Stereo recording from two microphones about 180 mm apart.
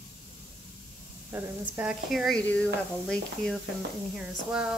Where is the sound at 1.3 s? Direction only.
10° right (ahead or behind).